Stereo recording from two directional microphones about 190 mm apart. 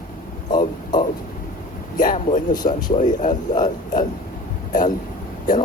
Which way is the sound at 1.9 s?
45° left (ahead or behind).